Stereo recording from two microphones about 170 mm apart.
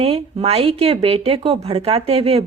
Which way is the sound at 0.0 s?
35° right (ahead or behind).